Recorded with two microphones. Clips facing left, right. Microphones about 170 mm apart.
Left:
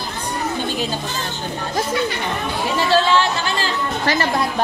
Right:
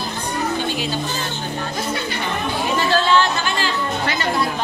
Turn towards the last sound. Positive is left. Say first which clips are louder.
# left 1 dB
turn(degrees=35)  # may be behind; listen again after turning